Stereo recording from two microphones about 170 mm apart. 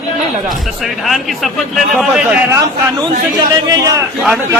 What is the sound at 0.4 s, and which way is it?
A man's voice, centre (ahead or behind).